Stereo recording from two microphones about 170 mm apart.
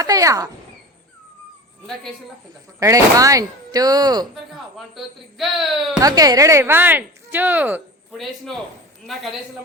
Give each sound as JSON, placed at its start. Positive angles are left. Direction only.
{"t": 0.0, "sound": "a child's voice", "side_deg": -20}
{"t": 2.8, "sound": "speech", "side_deg": -20}
{"t": 4.5, "sound": "speech", "side_deg": 0}
{"t": 6.0, "sound": "speech", "side_deg": -20}
{"t": 8.1, "sound": "speech", "side_deg": 0}